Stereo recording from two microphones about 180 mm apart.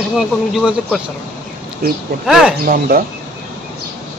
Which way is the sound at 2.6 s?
55° right (ahead or behind).